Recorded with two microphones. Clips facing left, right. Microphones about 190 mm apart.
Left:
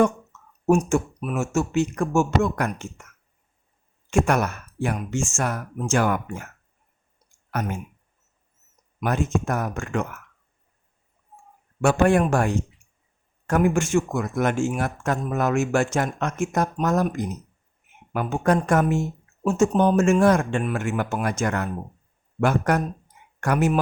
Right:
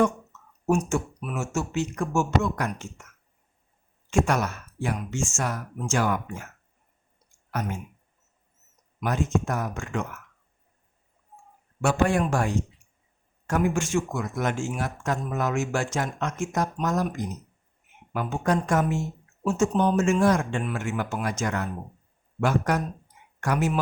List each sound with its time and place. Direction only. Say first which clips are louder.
0.7 s a man's voice: left 5 dB; 45° left (ahead or behind)
4.1 s speech: left 3 dB; 55° left (ahead or behind)
9.0 s speech: left 2 dB; 55° left (ahead or behind)
11.8 s speech: left 4 dB; 60° left (ahead or behind)